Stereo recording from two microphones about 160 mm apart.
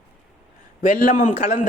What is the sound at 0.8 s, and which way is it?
Speech, 55° left (ahead or behind).